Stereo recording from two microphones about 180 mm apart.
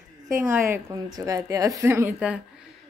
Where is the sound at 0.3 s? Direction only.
15° right (ahead or behind).